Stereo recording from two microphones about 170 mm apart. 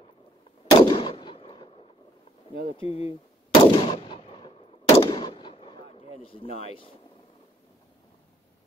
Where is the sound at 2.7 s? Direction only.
35° left (ahead or behind).